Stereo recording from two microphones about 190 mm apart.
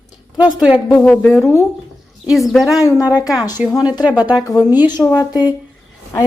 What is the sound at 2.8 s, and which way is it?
Speech, 20° left (ahead or behind).